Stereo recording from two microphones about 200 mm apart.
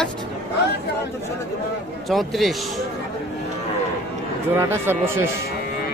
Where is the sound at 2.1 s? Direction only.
Centre (ahead or behind).